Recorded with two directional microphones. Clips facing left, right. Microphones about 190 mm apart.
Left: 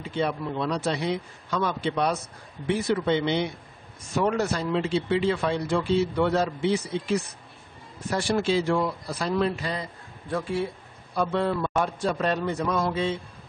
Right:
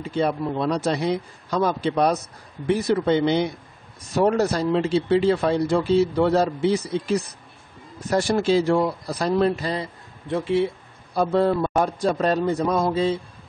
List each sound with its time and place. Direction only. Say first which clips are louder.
0.1 s speech: right 4 dB; 40° right (ahead or behind)
10.2 s speech: right 6 dB; 25° right (ahead or behind)
11.1 s speech: right 5 dB; 40° right (ahead or behind)